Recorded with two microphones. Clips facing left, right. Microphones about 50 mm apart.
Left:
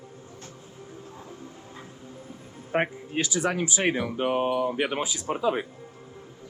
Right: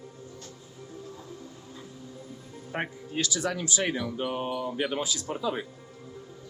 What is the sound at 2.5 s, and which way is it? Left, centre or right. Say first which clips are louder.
Speech: left 7 dB; left.